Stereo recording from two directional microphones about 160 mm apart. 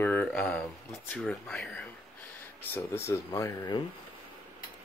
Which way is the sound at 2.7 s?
15° left (ahead or behind).